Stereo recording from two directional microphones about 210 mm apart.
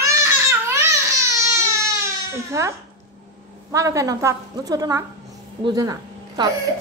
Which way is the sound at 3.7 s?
15° right (ahead or behind).